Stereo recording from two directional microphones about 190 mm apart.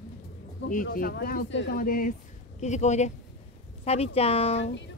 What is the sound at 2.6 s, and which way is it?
Speech, 35° left (ahead or behind).